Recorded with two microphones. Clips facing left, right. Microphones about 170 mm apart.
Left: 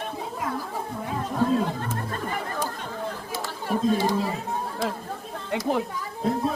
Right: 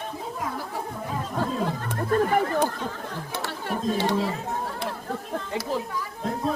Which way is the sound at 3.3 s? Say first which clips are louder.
Left 1 dB; 65° right (ahead or behind).